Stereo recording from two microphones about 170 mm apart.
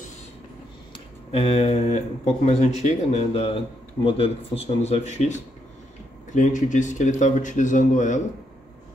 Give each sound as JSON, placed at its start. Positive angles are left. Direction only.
{"t": 0.9, "sound": "speech", "side_deg": 35}